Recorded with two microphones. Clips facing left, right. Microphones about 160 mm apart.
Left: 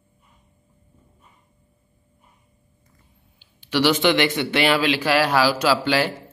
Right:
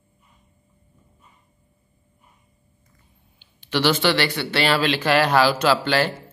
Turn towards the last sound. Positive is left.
turn(degrees=10)  # may be behind; listen again after turning